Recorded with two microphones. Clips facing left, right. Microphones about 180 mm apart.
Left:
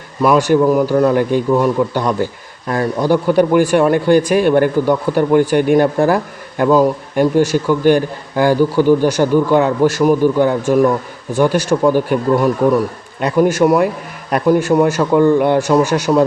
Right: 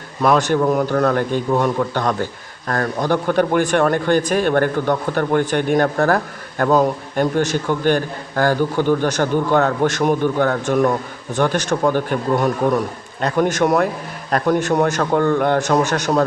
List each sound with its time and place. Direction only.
0.2 s speech: 10° left (ahead or behind)
13.2 s speech: 10° left (ahead or behind)